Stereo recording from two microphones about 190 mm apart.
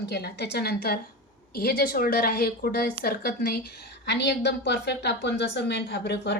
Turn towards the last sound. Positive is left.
turn(degrees=60)  # may be behind; listen again after turning